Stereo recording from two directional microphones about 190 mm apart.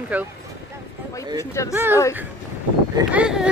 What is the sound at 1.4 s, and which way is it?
Speech, 15° left (ahead or behind).